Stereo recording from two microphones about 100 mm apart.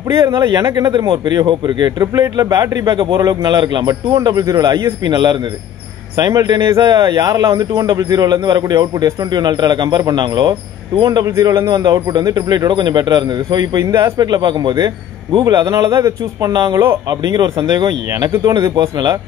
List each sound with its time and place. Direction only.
0.1 s speech: 35° right (ahead or behind)
1.0 s a man's voice: 55° right (ahead or behind)
11.1 s speech: 35° right (ahead or behind)